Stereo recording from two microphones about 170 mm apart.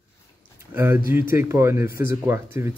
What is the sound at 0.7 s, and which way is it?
Speech, 10° right (ahead or behind).